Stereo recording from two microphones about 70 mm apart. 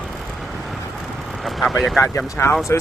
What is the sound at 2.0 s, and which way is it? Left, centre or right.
Speech, left.